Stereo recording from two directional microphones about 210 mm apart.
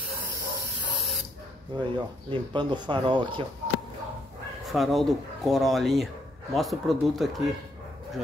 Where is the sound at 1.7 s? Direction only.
20° right (ahead or behind).